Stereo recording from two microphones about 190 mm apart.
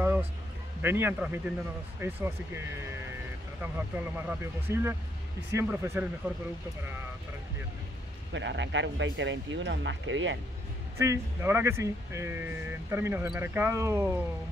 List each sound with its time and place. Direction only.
0.0 s music: 10° right (ahead or behind)
0.8 s speech: 10° right (ahead or behind)
3.9 s speech: 10° right (ahead or behind)
8.3 s speech: 70° right (ahead or behind)
11.0 s speech: 15° right (ahead or behind)